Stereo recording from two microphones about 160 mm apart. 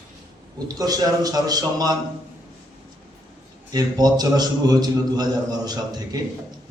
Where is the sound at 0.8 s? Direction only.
25° right (ahead or behind).